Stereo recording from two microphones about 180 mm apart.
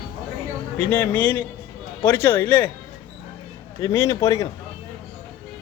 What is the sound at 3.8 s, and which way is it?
Speech, 15° left (ahead or behind).